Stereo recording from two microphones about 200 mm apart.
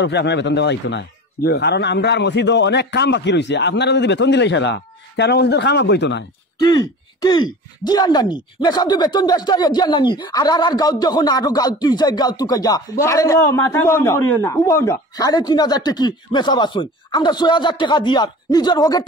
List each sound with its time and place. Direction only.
0.0 s a man's voice: 60° left (ahead or behind)
6.6 s speech: 20° left (ahead or behind)